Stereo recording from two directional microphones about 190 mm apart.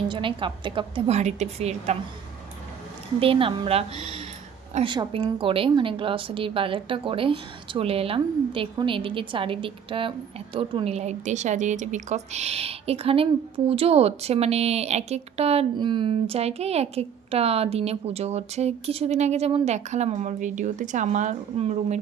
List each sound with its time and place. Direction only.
0.1 s a woman's voice: 25° right (ahead or behind)
3.2 s a woman's voice: 30° right (ahead or behind)